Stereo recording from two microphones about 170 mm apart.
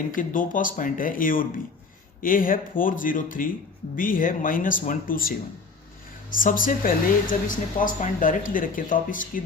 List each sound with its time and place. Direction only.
0.2 s speech: 55° left (ahead or behind)
6.3 s speech: 55° left (ahead or behind)